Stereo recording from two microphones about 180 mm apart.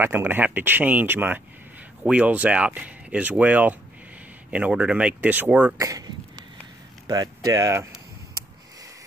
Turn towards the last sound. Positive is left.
turn(degrees=-15)  # may be behind; listen again after turning